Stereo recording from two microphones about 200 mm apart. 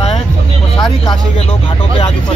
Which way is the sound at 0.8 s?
20° left (ahead or behind).